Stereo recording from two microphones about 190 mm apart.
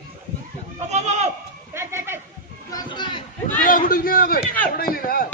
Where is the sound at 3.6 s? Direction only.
45° left (ahead or behind).